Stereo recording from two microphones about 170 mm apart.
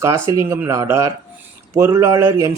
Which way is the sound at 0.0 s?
20° right (ahead or behind).